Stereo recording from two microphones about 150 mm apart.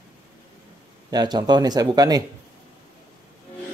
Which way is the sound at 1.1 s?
25° right (ahead or behind).